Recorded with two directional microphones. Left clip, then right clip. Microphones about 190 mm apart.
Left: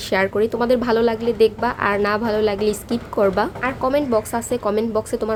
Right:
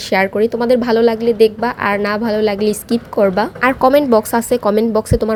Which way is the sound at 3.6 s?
35° right (ahead or behind).